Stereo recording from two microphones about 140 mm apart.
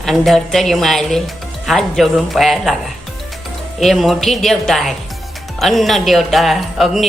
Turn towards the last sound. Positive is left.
turn(degrees=0)  # may be behind; listen again after turning